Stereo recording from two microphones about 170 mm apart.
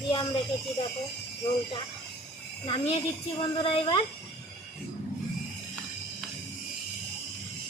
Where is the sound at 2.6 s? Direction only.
30° left (ahead or behind).